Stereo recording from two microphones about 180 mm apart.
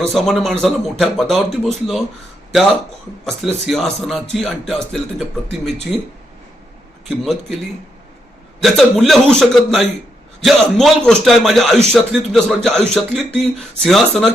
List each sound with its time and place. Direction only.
0.1 s a man's voice: centre (ahead or behind)
3.2 s a man's voice: centre (ahead or behind)
7.3 s a man's voice: centre (ahead or behind)
8.6 s a man's voice: centre (ahead or behind)